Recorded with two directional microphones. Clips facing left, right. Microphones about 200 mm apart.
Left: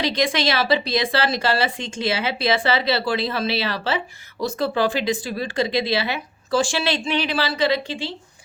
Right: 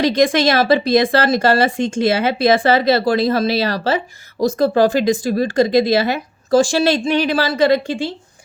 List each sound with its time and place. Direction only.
0.0 s speech: 45° right (ahead or behind)